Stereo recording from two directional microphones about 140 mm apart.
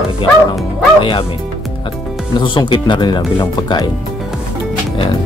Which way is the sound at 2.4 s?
35° left (ahead or behind).